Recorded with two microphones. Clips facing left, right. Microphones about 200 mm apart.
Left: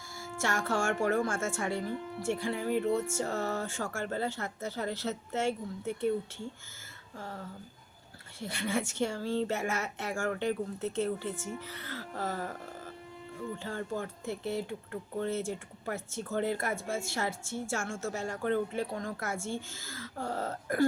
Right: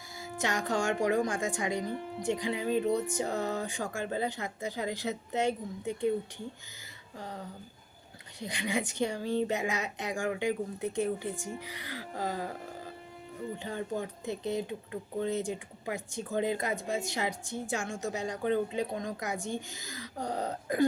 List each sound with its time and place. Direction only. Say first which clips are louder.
0.2 s a woman's voice: even; 20° right (ahead or behind)